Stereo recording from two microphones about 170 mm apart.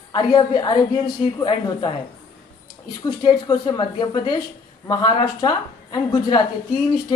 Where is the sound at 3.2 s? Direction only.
25° left (ahead or behind).